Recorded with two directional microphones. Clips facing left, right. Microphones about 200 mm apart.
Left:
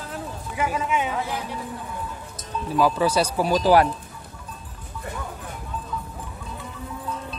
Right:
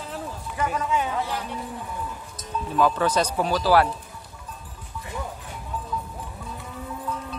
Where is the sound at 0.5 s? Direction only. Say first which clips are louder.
Left 1 dB; 5° left (ahead or behind).